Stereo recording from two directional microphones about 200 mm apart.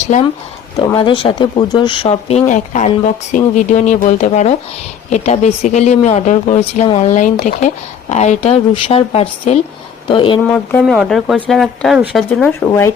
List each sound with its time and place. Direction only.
0.0 s speech: 35° left (ahead or behind)
10.4 s speech: 10° left (ahead or behind)